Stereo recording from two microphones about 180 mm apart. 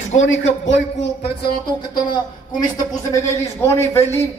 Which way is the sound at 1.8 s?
25° left (ahead or behind).